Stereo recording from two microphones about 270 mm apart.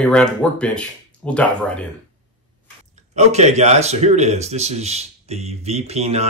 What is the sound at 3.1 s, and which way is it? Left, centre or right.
Speech, right.